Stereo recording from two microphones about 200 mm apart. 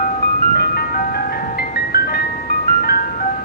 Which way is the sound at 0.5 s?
50° left (ahead or behind).